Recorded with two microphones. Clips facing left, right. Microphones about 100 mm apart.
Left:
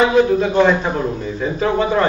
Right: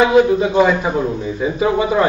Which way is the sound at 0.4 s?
10° right (ahead or behind).